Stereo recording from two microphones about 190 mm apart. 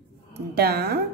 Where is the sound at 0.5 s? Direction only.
55° right (ahead or behind).